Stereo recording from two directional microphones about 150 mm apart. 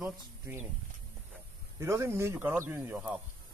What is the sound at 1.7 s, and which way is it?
Speech, 20° right (ahead or behind).